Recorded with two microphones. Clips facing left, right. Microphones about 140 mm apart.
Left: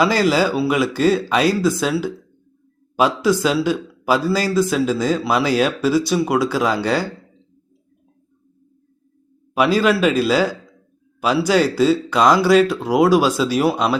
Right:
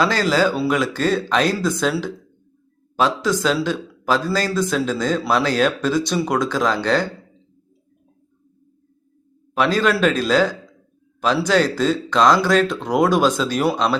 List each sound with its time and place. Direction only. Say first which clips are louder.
0.0 s a man's voice: left 2 dB; 10° left (ahead or behind)
9.6 s a man's voice: left 2 dB; 10° left (ahead or behind)